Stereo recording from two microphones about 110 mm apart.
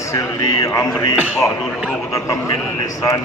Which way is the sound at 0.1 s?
30° left (ahead or behind).